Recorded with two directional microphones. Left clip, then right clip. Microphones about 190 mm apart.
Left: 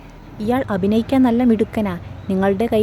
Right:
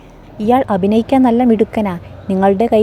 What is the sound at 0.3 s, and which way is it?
A woman's voice, 20° right (ahead or behind).